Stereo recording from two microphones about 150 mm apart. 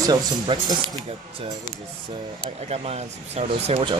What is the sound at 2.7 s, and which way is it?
Speech, 45° right (ahead or behind).